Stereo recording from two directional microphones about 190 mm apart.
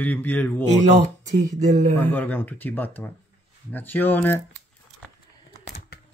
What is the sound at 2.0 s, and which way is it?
Speech, 10° left (ahead or behind).